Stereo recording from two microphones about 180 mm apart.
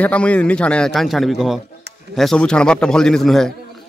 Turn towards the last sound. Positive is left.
turn(degrees=0)  # may be behind; listen again after turning